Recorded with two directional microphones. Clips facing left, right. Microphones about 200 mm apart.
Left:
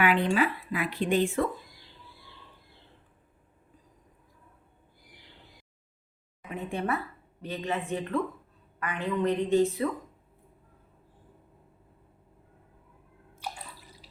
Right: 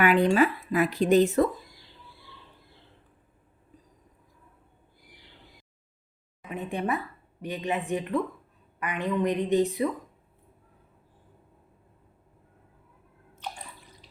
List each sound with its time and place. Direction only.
0.0 s speech: 45° right (ahead or behind)
6.5 s a woman's voice: 15° right (ahead or behind)
13.3 s bathtub: 10° left (ahead or behind)